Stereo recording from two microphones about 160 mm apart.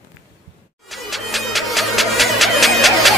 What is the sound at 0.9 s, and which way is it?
Music, centre (ahead or behind).